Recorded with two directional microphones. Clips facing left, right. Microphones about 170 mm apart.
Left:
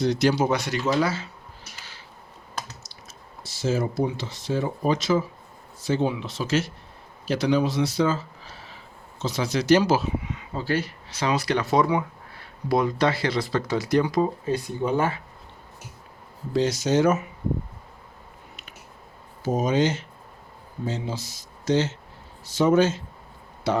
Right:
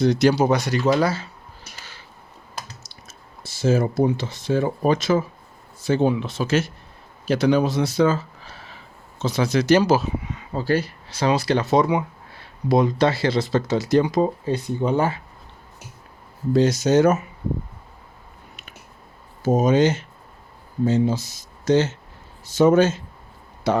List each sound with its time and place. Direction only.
0.0 s speech: 50° right (ahead or behind)
2.8 s speech: 50° right (ahead or behind)
9.2 s speech: 55° right (ahead or behind); by 15.2 s 30° right (ahead or behind)
16.5 s speech: 45° right (ahead or behind)
19.5 s speech: 50° right (ahead or behind)